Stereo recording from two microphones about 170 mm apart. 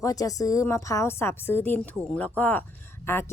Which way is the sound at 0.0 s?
20° left (ahead or behind).